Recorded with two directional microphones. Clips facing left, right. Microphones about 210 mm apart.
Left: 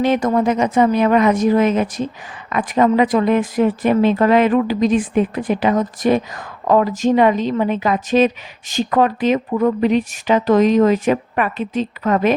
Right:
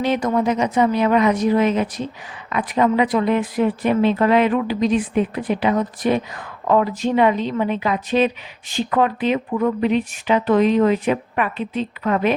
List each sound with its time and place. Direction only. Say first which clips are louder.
0.0 s a woman's voice: left 3 dB; 50° left (ahead or behind)